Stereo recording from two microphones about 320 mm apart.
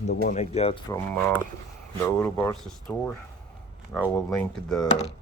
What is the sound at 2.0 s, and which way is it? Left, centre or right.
Speech, centre.